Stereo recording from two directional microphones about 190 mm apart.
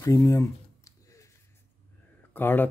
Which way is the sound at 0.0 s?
15° left (ahead or behind).